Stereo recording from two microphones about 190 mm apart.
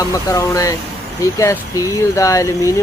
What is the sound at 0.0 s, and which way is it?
Speech, 20° left (ahead or behind).